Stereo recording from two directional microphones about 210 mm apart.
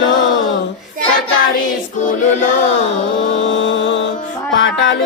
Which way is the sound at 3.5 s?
60° left (ahead or behind).